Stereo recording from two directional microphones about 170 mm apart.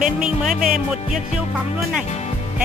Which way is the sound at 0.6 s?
50° right (ahead or behind).